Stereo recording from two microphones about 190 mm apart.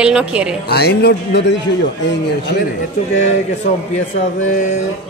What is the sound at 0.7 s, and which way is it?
Speech, 60° left (ahead or behind).